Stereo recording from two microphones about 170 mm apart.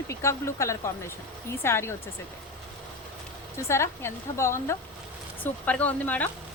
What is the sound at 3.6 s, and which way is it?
A woman's voice, 15° left (ahead or behind).